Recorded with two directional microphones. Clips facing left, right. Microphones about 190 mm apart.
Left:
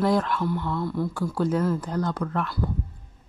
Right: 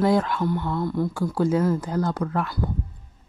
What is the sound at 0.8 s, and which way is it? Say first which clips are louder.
Speech: right 2 dB; 20° right (ahead or behind).